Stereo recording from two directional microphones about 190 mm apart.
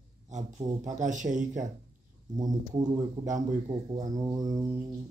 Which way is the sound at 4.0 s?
20° right (ahead or behind).